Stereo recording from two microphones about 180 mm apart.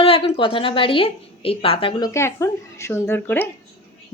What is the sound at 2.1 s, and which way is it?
A woman's voice, 15° left (ahead or behind).